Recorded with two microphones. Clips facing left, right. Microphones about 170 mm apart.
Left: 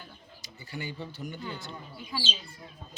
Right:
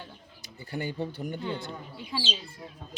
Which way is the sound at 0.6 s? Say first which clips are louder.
Right 6 dB; 55° right (ahead or behind).